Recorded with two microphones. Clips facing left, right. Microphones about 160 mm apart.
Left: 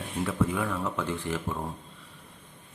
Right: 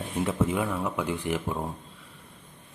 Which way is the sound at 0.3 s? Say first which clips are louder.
Right 1 dB; 20° right (ahead or behind).